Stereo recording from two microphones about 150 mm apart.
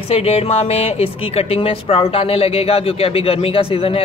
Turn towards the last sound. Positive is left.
turn(degrees=40)  # may be behind; listen again after turning